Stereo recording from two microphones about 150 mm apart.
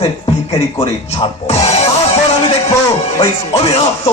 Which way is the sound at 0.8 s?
45° left (ahead or behind).